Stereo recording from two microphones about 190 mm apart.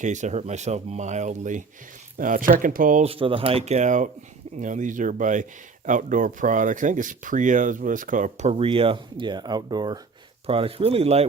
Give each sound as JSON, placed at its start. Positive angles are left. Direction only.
{"t": 0.0, "sound": "speech", "side_deg": -40}
{"t": 3.1, "sound": "speech", "side_deg": -30}